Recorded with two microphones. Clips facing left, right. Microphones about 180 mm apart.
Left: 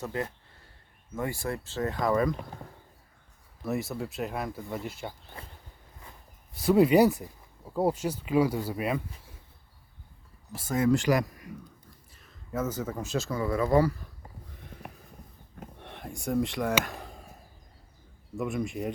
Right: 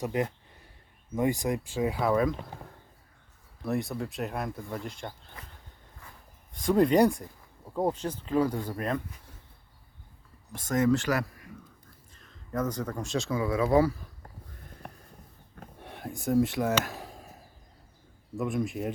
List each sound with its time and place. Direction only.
0.0 s speech: 20° right (ahead or behind); by 5.1 s 5° left (ahead or behind)
5.4 s a sound: 30° left (ahead or behind)
6.5 s speech: 5° left (ahead or behind)
10.5 s speech: 10° left (ahead or behind)
12.1 s speech: 5° left (ahead or behind)
15.8 s a sound: 5° right (ahead or behind)
18.3 s speech: centre (ahead or behind)